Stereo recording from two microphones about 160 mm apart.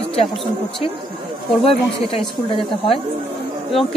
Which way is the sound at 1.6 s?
35° left (ahead or behind).